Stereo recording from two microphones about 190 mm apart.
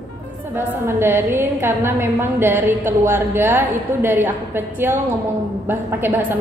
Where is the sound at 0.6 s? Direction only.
10° right (ahead or behind).